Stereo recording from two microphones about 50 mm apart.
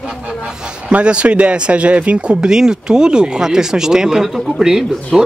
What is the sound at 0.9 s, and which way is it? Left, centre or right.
A man's voice, right.